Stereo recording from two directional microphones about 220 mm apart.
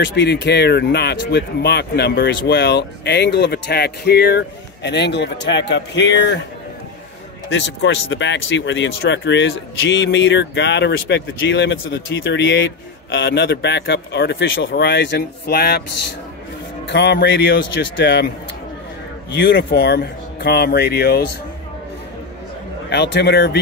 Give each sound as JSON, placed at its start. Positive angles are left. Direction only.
{"t": 0.0, "sound": "speech", "side_deg": 50}
{"t": 7.4, "sound": "speech", "side_deg": 55}
{"t": 16.8, "sound": "speech", "side_deg": 50}
{"t": 19.3, "sound": "speech", "side_deg": 50}
{"t": 22.8, "sound": "speech", "side_deg": 50}